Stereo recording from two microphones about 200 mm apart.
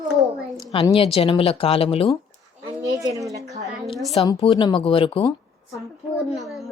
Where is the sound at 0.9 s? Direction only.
30° left (ahead or behind).